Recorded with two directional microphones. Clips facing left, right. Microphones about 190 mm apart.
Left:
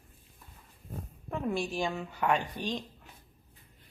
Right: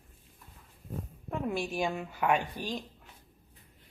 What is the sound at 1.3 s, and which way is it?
A woman's voice, 5° right (ahead or behind).